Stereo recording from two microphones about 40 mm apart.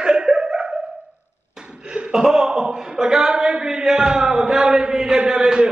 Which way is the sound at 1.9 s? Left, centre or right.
Centre.